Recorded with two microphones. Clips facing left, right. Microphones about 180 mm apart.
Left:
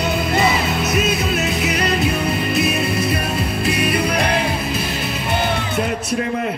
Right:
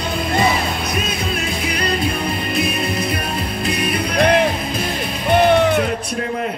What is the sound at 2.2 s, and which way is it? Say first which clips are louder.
Music: left 2 dB; 25° left (ahead or behind).